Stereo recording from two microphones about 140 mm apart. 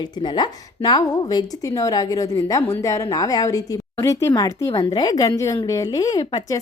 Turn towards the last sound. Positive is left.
turn(degrees=30)  # may be behind; listen again after turning